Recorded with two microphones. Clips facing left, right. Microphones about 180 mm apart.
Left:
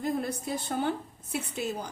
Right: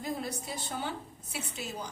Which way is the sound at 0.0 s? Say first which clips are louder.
Left 5 dB; 55° left (ahead or behind).